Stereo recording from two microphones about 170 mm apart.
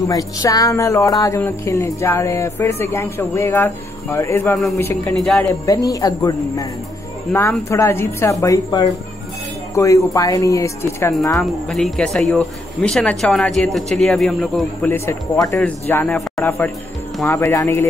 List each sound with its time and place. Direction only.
0.1 s speech: 20° left (ahead or behind)
5.1 s speech: centre (ahead or behind)
5.7 s speech: 20° left (ahead or behind)
7.7 s speech: 15° left (ahead or behind)
11.3 s speech: centre (ahead or behind)
14.9 s speech: 15° left (ahead or behind)